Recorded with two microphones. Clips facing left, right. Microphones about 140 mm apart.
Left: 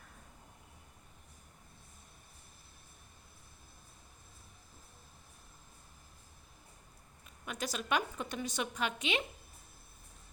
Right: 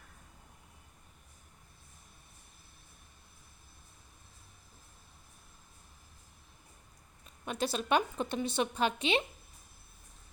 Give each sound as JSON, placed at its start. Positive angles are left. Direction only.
{"t": 7.4, "sound": "a woman's voice", "side_deg": -30}